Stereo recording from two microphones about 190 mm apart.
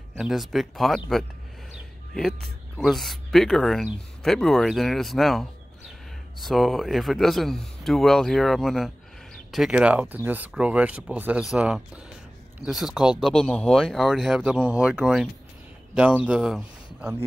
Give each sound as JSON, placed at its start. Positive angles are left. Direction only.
{"t": 0.1, "sound": "a man's voice", "side_deg": 0}